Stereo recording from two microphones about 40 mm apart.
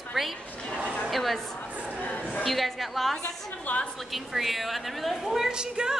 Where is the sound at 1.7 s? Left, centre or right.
Right.